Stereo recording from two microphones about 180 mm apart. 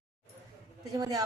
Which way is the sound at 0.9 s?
20° right (ahead or behind).